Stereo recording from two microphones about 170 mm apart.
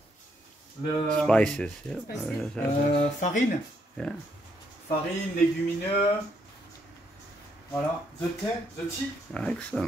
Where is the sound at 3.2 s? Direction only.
45° left (ahead or behind).